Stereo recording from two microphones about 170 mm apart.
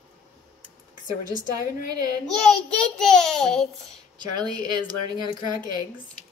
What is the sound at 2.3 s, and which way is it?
A child's voice, 5° left (ahead or behind).